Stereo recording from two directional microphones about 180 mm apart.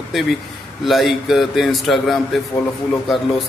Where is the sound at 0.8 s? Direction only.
Centre (ahead or behind).